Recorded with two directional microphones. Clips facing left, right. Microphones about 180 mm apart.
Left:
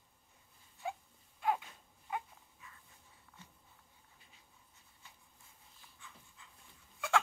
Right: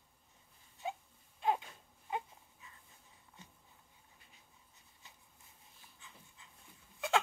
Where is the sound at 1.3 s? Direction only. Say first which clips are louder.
Right 1 dB; 25° right (ahead or behind).